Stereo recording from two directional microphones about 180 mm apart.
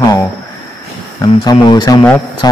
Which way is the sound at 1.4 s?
25° left (ahead or behind).